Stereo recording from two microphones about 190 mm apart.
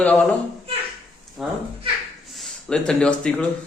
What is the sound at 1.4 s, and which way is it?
Speech, centre (ahead or behind).